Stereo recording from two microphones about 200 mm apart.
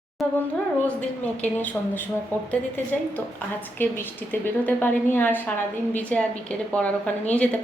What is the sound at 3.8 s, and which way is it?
A woman's voice, 10° left (ahead or behind).